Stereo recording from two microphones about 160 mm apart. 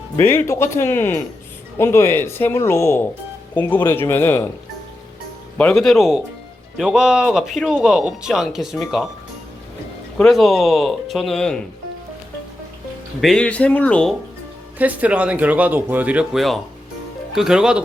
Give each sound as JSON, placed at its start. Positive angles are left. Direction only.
{"t": 0.2, "sound": "speech", "side_deg": 15}
{"t": 5.5, "sound": "speech", "side_deg": 5}
{"t": 10.2, "sound": "speech", "side_deg": 0}
{"t": 13.2, "sound": "speech", "side_deg": 5}
{"t": 14.8, "sound": "speech", "side_deg": -10}